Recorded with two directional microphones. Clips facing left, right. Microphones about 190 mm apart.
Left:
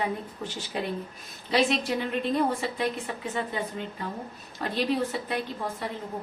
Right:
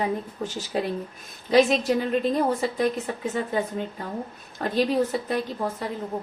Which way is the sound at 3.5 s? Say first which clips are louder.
Right 6 dB; 45° right (ahead or behind).